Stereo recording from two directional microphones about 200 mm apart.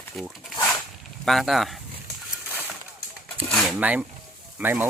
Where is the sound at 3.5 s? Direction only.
Centre (ahead or behind).